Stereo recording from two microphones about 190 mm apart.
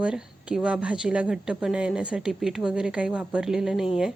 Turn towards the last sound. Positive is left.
turn(degrees=-5)  # may be behind; listen again after turning